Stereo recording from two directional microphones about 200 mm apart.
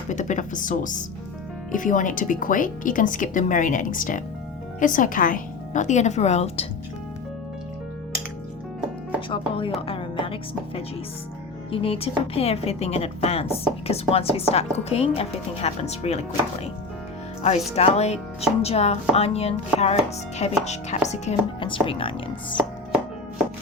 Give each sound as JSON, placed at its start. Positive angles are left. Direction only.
{"t": 0.1, "sound": "speech", "side_deg": 40}
{"t": 9.3, "sound": "a woman's voice", "side_deg": 25}
{"t": 9.8, "sound": "music", "side_deg": 25}
{"t": 11.7, "sound": "a woman's voice", "side_deg": 30}
{"t": 17.7, "sound": "a woman's voice", "side_deg": 30}